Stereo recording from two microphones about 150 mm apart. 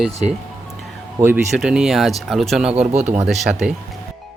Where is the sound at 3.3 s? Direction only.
Centre (ahead or behind).